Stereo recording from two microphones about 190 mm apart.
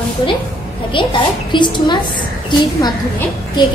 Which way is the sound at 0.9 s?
25° left (ahead or behind).